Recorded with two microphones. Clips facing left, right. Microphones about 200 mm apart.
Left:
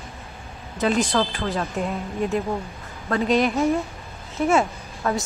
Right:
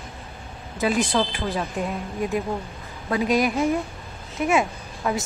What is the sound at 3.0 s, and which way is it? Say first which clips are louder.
Speech: left 1 dB; 10° right (ahead or behind).